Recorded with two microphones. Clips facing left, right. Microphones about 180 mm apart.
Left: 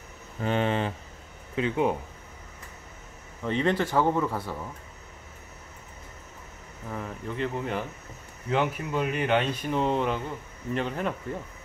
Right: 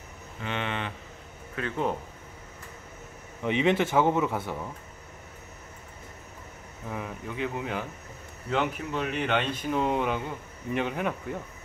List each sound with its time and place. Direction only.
0.4 s speech: 40° left (ahead or behind)
1.5 s speech: 15° left (ahead or behind)
3.4 s speech: 15° right (ahead or behind)
6.9 s speech: 5° right (ahead or behind)